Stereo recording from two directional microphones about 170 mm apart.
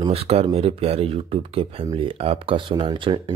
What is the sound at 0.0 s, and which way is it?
Speech, 35° right (ahead or behind).